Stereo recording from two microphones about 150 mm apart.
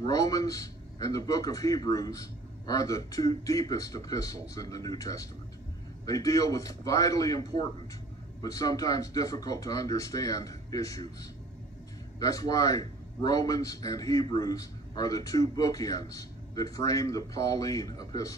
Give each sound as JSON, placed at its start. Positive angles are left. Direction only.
{"t": 0.0, "sound": "a man's voice", "side_deg": 25}
{"t": 12.2, "sound": "a man's voice", "side_deg": 25}